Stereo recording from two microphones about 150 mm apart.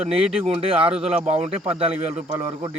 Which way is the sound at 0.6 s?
40° right (ahead or behind).